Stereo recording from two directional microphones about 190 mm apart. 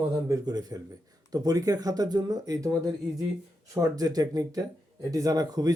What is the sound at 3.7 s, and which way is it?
Speech, 20° right (ahead or behind).